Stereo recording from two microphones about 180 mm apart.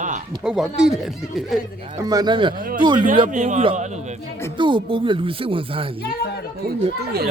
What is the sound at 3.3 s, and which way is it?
Speech, 40° right (ahead or behind).